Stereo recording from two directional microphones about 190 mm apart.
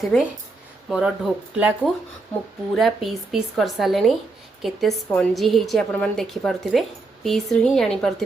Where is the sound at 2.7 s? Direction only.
Centre (ahead or behind).